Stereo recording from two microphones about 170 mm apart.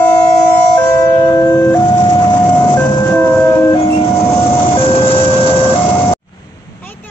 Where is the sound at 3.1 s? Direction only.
10° left (ahead or behind).